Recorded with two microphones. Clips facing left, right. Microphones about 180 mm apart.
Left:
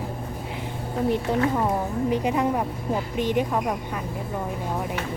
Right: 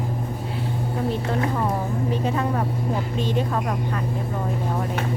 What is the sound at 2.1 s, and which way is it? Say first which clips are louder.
Speech: left 2 dB; 15° left (ahead or behind).